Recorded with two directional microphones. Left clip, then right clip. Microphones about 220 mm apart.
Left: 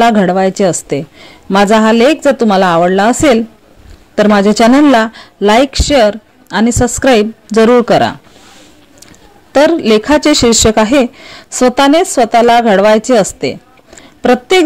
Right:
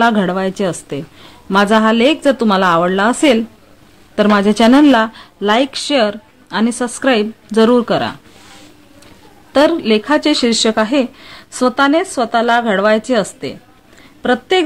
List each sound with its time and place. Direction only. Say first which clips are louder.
0.0 s speech: left 5 dB; 15° left (ahead or behind)
9.5 s speech: left 4 dB; 20° left (ahead or behind)